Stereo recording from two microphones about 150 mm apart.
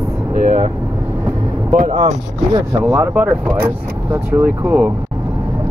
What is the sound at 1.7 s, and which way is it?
Speech, 50° right (ahead or behind).